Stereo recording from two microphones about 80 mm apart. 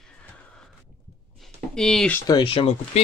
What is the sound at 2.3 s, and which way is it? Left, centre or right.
Speech, left.